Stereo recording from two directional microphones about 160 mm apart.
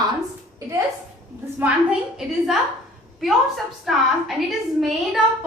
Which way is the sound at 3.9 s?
Centre (ahead or behind).